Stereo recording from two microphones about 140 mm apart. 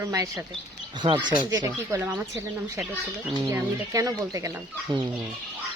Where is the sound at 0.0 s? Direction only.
25° right (ahead or behind).